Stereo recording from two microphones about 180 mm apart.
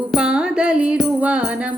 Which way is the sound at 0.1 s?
5° right (ahead or behind).